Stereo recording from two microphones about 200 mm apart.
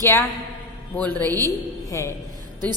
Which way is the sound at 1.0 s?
10° left (ahead or behind).